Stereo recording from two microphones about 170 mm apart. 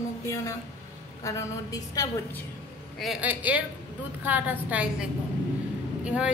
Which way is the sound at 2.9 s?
5° right (ahead or behind).